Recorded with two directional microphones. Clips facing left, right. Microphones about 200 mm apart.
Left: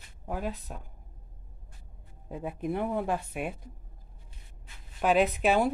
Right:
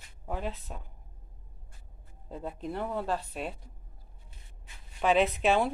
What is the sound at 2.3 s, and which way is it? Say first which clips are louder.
Speech: left 4 dB; 10° left (ahead or behind).